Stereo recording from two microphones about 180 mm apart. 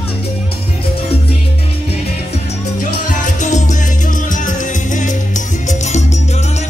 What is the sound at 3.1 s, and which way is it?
Music, 45° left (ahead or behind).